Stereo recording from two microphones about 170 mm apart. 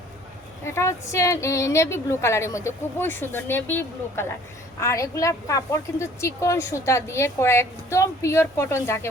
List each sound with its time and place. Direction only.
0.6 s speech: 15° left (ahead or behind)